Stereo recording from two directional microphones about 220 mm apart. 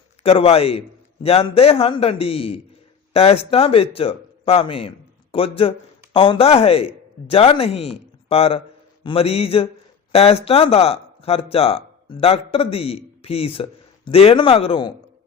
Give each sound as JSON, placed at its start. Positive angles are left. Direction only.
{"t": 0.2, "sound": "speech", "side_deg": 25}